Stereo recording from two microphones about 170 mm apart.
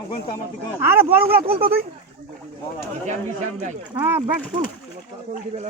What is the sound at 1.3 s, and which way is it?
Speech, 35° right (ahead or behind).